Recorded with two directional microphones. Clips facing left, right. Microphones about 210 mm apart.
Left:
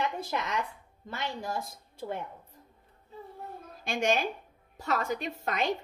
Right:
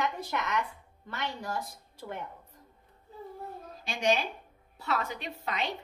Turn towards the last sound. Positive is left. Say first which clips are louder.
# left 4 dB
turn(degrees=45)  # may be behind; listen again after turning